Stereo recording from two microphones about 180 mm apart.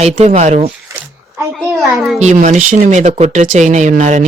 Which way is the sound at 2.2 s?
40° right (ahead or behind).